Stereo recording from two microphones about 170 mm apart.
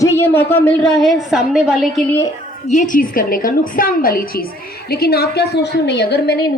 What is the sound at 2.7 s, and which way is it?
A woman's voice, 50° left (ahead or behind).